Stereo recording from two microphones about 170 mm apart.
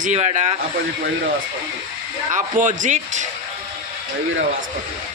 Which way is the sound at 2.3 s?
50° right (ahead or behind).